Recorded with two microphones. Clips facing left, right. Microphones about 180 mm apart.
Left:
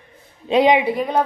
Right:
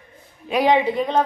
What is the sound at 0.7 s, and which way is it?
Speech, 5° left (ahead or behind).